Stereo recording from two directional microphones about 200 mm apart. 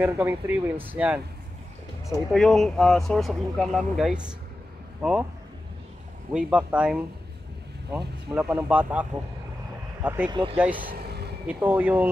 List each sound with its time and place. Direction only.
0.0 s speech: 10° right (ahead or behind)
2.3 s speech: centre (ahead or behind)
6.3 s speech: 5° right (ahead or behind)
10.0 s speech: 10° right (ahead or behind)
10.3 s speech: 25° right (ahead or behind)
10.6 s speech: 10° right (ahead or behind)
10.9 s vehicle: 50° right (ahead or behind)
11.4 s speech: 10° right (ahead or behind)